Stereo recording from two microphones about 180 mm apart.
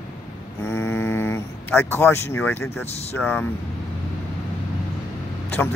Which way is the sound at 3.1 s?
10° left (ahead or behind).